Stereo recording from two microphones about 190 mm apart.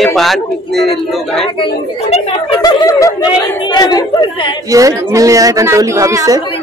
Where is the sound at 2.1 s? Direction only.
25° left (ahead or behind).